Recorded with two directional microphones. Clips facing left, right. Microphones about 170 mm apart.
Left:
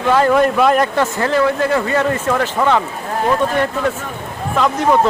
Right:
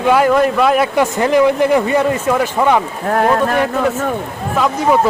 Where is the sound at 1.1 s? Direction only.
15° right (ahead or behind).